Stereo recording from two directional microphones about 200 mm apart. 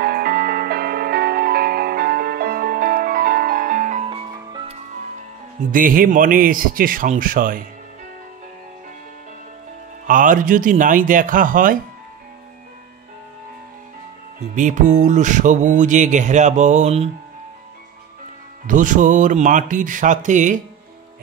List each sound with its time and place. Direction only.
0.0 s music: 50° right (ahead or behind); by 4.7 s 20° right (ahead or behind)
5.6 s speech: 45° right (ahead or behind)
10.0 s speech: 40° right (ahead or behind)
14.5 s speech: 40° right (ahead or behind)
18.7 s speech: 40° right (ahead or behind)